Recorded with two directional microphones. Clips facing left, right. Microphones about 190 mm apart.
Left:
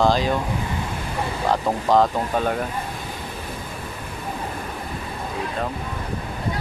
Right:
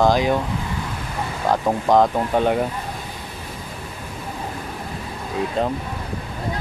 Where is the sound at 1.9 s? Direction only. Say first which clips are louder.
Right 2 dB; 15° right (ahead or behind).